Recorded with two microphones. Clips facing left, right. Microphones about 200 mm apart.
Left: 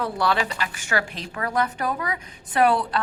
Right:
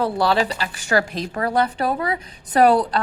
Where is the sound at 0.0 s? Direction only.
30° right (ahead or behind).